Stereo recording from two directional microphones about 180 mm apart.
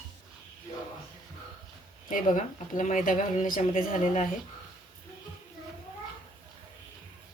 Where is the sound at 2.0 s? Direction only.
45° left (ahead or behind).